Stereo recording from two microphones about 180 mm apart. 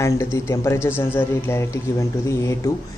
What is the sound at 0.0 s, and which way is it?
Speech, 15° left (ahead or behind).